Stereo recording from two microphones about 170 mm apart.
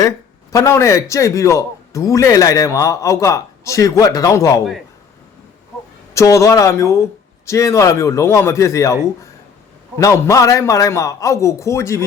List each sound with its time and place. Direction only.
0.5 s a man's voice: 20° left (ahead or behind)
6.1 s speech: 20° left (ahead or behind)
10.0 s speech: 15° left (ahead or behind)